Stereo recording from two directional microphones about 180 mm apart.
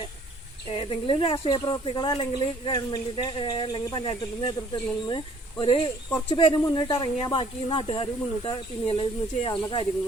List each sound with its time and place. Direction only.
0.7 s speech: 30° left (ahead or behind)